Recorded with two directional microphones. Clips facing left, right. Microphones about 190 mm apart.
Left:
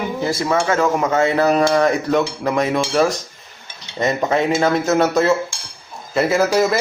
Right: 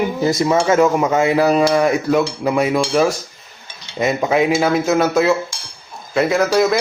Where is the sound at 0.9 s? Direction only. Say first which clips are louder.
Right 2 dB; 15° right (ahead or behind).